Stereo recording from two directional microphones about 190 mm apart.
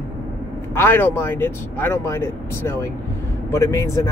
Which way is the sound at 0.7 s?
10° left (ahead or behind).